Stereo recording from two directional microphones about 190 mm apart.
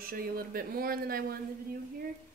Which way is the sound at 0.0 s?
50° right (ahead or behind).